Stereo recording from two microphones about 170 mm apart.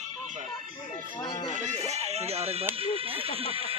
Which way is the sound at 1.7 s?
40° right (ahead or behind).